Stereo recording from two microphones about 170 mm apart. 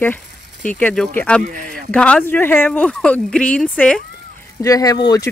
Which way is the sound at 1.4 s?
55° right (ahead or behind).